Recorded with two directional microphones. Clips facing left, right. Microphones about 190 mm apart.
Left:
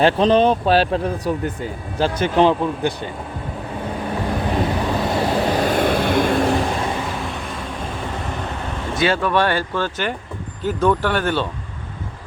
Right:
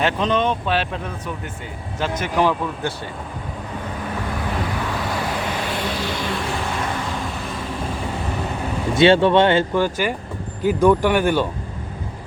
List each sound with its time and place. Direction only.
0.0 s speech: 35° left (ahead or behind)
4.5 s vehicle: 20° left (ahead or behind); by 6.3 s 55° left (ahead or behind)
9.0 s speech: 25° right (ahead or behind)